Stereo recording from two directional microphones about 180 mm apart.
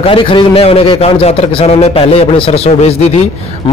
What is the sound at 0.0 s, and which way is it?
A man's voice, 30° left (ahead or behind).